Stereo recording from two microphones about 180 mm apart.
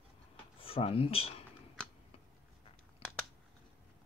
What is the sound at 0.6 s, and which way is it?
Speech, 35° left (ahead or behind).